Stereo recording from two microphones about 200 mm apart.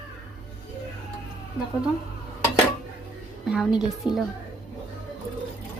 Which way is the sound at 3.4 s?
5° right (ahead or behind).